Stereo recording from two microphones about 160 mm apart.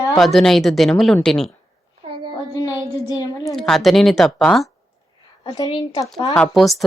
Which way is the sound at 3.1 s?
20° left (ahead or behind).